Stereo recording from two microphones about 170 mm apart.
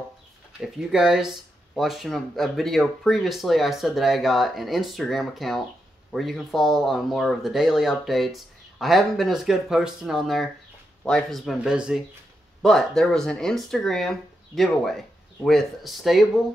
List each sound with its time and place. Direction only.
0.6 s speech: 5° right (ahead or behind)